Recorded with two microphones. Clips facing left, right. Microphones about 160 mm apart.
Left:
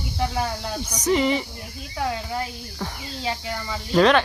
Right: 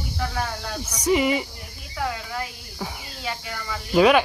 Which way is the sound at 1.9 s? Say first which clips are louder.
Left 2 dB; 25° left (ahead or behind).